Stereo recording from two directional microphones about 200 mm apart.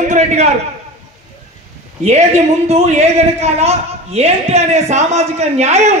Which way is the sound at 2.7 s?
35° right (ahead or behind).